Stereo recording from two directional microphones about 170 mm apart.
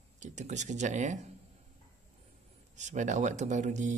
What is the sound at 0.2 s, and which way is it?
Speech, 45° right (ahead or behind).